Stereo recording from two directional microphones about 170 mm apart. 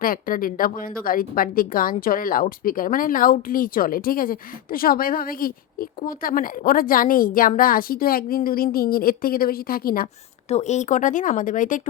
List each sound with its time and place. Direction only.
0.0 s a woman's voice: 55° left (ahead or behind)
10.5 s speech: 40° left (ahead or behind)